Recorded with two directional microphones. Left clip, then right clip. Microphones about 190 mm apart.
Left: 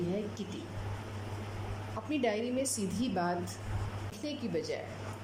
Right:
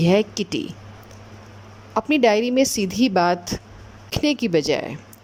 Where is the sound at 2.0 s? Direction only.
50° right (ahead or behind).